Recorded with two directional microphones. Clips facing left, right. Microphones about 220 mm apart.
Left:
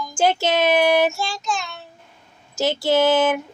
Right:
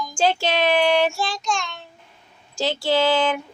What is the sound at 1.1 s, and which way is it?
Child singing, centre (ahead or behind).